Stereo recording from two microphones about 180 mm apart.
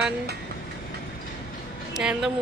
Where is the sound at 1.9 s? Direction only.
5° right (ahead or behind).